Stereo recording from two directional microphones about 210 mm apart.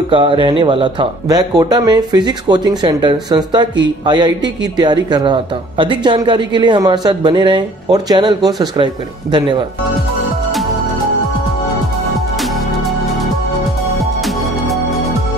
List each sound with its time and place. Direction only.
0.1 s speech: 25° right (ahead or behind)